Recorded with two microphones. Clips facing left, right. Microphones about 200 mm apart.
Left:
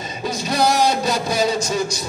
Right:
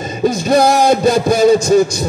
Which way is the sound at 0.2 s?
50° right (ahead or behind).